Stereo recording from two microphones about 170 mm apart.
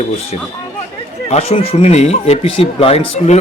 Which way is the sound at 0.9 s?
35° left (ahead or behind).